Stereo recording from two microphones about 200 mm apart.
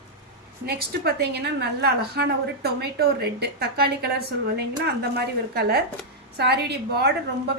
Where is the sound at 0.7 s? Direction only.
50° right (ahead or behind).